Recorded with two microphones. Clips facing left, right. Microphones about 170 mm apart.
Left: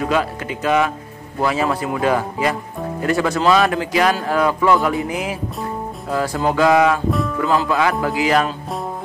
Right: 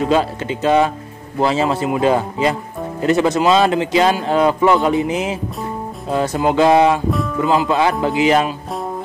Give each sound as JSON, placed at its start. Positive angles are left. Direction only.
{"t": 0.0, "sound": "speech", "side_deg": -25}